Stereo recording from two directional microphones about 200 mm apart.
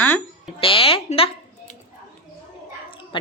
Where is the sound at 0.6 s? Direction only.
25° left (ahead or behind).